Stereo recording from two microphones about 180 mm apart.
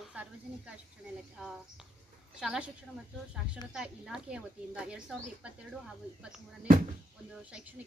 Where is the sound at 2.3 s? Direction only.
5° right (ahead or behind).